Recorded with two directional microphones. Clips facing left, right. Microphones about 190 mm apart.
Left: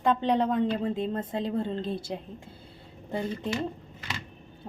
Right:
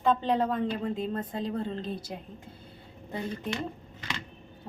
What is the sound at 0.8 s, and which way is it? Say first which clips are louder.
A woman's voice: left 2 dB; 25° left (ahead or behind).